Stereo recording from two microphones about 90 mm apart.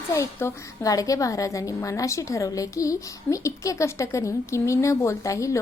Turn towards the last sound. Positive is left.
turn(degrees=35)  # may be behind; listen again after turning